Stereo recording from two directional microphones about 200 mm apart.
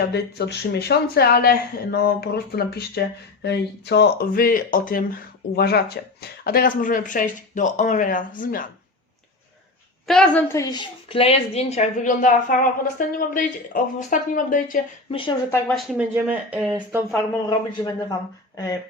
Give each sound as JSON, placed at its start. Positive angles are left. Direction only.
{"t": 0.1, "sound": "speech", "side_deg": 55}
{"t": 10.1, "sound": "a woman's voice", "side_deg": 5}
{"t": 15.1, "sound": "a woman's voice", "side_deg": 25}
{"t": 15.4, "sound": "speech", "side_deg": 10}
{"t": 15.9, "sound": "speech", "side_deg": -5}
{"t": 17.7, "sound": "a woman's voice", "side_deg": 20}